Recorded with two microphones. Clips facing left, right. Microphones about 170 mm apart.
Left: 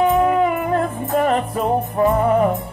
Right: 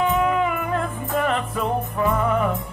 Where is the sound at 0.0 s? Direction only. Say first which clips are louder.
Left 5 dB; 40° left (ahead or behind).